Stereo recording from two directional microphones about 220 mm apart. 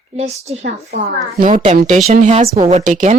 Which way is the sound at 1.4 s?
35° right (ahead or behind).